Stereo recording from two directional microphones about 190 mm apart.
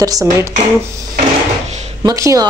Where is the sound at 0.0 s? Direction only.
20° right (ahead or behind).